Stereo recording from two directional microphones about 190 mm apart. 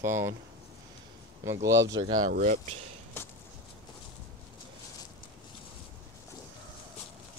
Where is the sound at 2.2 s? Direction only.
45° right (ahead or behind).